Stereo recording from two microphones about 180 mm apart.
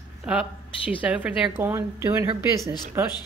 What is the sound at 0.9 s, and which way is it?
A woman's voice, 10° right (ahead or behind).